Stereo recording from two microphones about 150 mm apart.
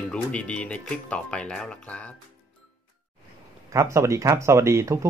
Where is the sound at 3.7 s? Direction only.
20° right (ahead or behind).